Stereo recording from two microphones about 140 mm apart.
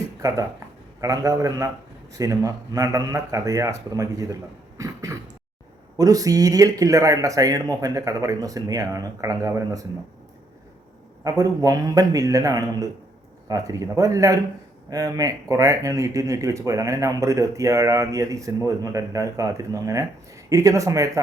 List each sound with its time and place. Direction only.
0.2 s speech: 25° right (ahead or behind)
4.8 s throat clearing: 20° right (ahead or behind)
6.0 s speech: 25° right (ahead or behind)
11.2 s speech: 25° right (ahead or behind)